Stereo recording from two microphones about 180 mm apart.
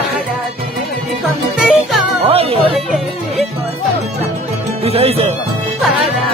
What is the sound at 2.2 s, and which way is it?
Music, 35° right (ahead or behind).